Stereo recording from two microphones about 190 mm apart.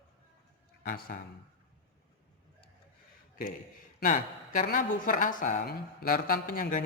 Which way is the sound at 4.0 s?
45° left (ahead or behind).